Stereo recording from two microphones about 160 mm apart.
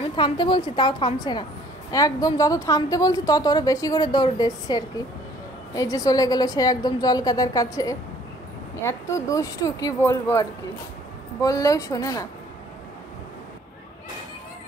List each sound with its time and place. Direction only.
0.1 s a woman's voice: 30° left (ahead or behind)
11.4 s a woman's voice: 20° left (ahead or behind)